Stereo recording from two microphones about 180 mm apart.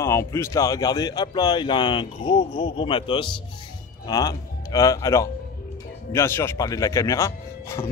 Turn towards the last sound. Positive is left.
turn(degrees=15)  # may be behind; listen again after turning